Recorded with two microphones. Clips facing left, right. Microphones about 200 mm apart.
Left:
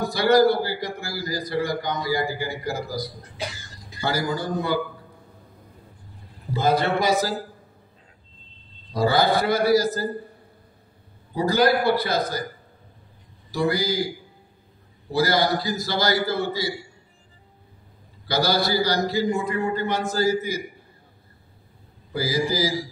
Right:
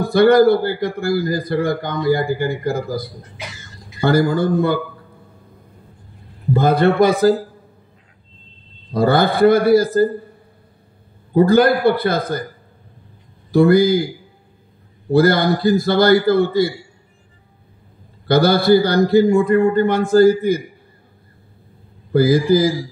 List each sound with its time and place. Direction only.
0.0 s a man's voice: 55° right (ahead or behind)
3.4 s cough: 30° left (ahead or behind)
4.0 s a man's voice: 55° right (ahead or behind)
6.5 s a man's voice: 55° right (ahead or behind)
8.9 s a man's voice: 55° right (ahead or behind)
11.3 s a man's voice: 55° right (ahead or behind)
13.5 s a man's voice: 55° right (ahead or behind)
15.0 s a man's voice: 55° right (ahead or behind)
18.2 s a man's voice: 55° right (ahead or behind)
22.1 s a man's voice: 55° right (ahead or behind)